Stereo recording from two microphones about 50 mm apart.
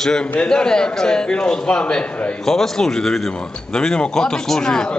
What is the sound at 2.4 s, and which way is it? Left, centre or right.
A man's voice, centre.